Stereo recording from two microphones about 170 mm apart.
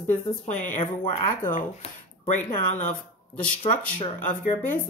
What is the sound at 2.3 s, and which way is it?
Speech, 50° left (ahead or behind).